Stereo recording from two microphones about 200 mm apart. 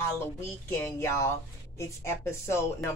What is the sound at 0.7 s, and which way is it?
Speech, 10° left (ahead or behind).